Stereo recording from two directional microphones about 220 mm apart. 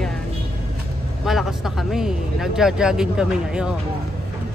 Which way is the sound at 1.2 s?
Centre (ahead or behind).